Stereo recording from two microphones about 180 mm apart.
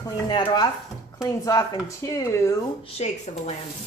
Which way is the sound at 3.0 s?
35° left (ahead or behind).